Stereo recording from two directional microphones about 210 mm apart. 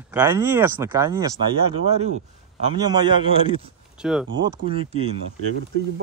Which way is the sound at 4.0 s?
Centre (ahead or behind).